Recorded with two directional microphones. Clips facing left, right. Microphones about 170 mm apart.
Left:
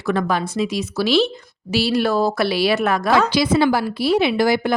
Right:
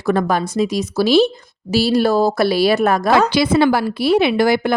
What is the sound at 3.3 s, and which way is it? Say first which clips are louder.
A woman's voice: right 2 dB; 60° right (ahead or behind).